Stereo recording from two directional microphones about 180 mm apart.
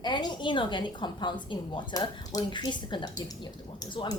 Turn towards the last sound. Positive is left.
turn(degrees=25)  # may be behind; listen again after turning